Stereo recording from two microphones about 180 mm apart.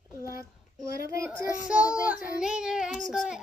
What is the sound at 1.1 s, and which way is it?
A child's voice, 10° right (ahead or behind).